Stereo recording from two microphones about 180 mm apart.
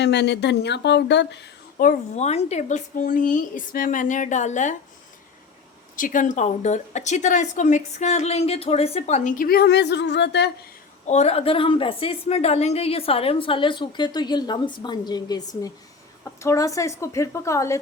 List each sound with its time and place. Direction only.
0.0 s speech: 70° left (ahead or behind)
1.8 s a woman's voice: 40° left (ahead or behind)
6.0 s a woman's voice: 45° left (ahead or behind); by 10.5 s 70° left (ahead or behind)
11.0 s a woman's voice: 40° left (ahead or behind); by 17.7 s 15° left (ahead or behind)